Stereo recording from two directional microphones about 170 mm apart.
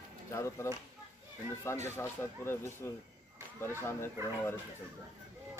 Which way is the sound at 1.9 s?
15° left (ahead or behind).